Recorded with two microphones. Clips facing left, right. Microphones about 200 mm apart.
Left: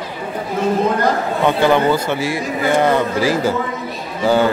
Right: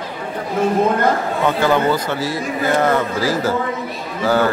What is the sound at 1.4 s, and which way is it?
A man's voice, 20° left (ahead or behind).